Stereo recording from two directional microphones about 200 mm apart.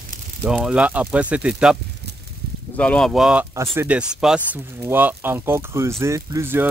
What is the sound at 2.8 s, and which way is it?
Speech, 5° left (ahead or behind).